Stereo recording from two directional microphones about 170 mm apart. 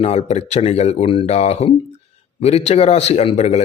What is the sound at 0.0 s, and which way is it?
Speech, 40° left (ahead or behind).